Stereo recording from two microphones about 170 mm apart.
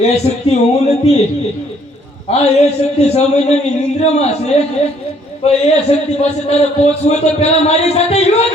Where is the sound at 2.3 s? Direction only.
40° left (ahead or behind).